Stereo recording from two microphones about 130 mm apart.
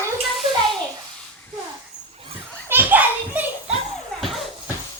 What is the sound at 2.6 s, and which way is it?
Children playing, 15° right (ahead or behind).